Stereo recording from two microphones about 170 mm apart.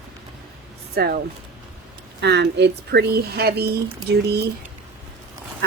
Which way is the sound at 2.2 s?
85° right.